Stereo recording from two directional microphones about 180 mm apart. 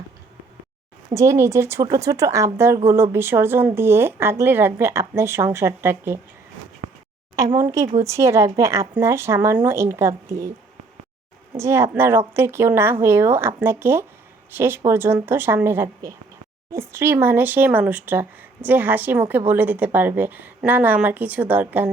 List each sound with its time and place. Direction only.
1.1 s speech: 15° right (ahead or behind)
7.3 s speech: 20° right (ahead or behind)
11.5 s speech: 15° right (ahead or behind)